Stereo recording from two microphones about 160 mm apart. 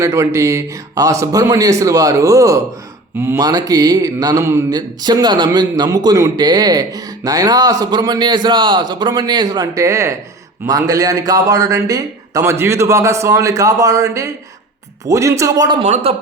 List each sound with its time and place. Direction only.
0.0 s speech: 15° right (ahead or behind)
15.8 s speech: 45° right (ahead or behind)